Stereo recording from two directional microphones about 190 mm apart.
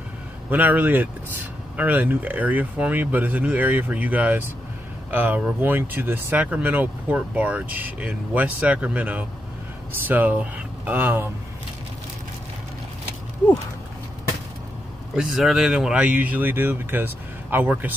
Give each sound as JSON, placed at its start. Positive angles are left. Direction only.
{"t": 0.5, "sound": "speech", "side_deg": -10}
{"t": 15.1, "sound": "speech", "side_deg": 0}